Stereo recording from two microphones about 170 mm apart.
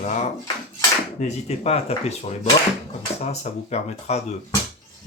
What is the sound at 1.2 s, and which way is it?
Speech, 40° left (ahead or behind).